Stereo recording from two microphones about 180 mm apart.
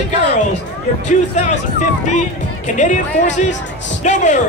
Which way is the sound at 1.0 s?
40° left (ahead or behind).